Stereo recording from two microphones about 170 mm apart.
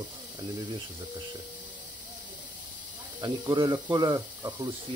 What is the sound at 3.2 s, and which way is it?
Speech, 20° right (ahead or behind).